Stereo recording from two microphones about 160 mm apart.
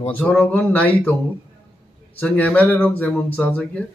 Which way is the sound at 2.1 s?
10° left (ahead or behind).